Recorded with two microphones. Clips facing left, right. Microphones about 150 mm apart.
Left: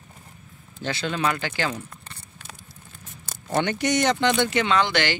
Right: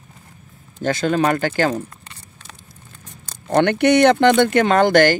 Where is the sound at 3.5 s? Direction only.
60° right (ahead or behind).